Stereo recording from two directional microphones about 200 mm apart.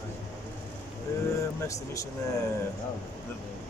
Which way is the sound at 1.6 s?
15° left (ahead or behind).